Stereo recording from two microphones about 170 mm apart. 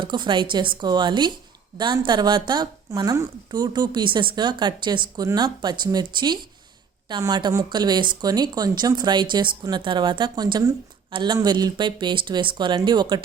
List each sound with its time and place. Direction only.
0.0 s speech: 25° right (ahead or behind)